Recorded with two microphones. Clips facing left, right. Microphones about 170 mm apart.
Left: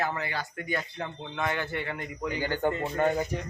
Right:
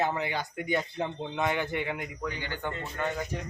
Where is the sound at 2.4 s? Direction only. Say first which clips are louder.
Left 7 dB; 45° left (ahead or behind).